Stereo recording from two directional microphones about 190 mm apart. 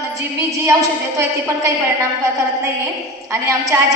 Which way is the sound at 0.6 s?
15° right (ahead or behind).